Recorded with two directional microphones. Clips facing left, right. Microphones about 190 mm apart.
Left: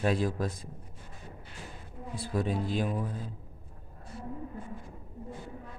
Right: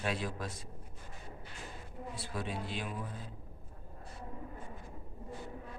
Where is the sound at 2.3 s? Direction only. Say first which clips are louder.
Left 10 dB; 45° left (ahead or behind).